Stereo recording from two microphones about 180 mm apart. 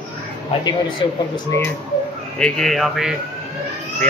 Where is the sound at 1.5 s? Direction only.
10° left (ahead or behind).